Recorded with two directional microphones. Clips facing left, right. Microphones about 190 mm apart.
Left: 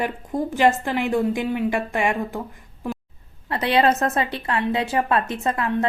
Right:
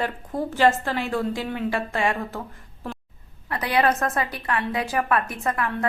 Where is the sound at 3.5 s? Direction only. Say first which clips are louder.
Left 3 dB; 25° left (ahead or behind).